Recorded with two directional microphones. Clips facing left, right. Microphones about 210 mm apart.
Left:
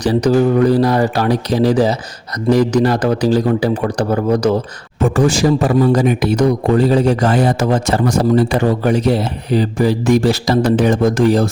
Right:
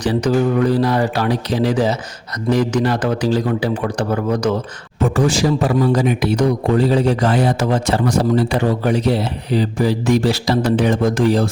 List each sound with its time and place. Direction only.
0.0 s a man's voice: 40° left (ahead or behind)
5.1 s speech: 45° left (ahead or behind)